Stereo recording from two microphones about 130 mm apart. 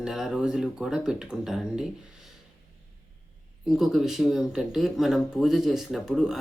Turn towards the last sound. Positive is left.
turn(degrees=-5)  # may be behind; listen again after turning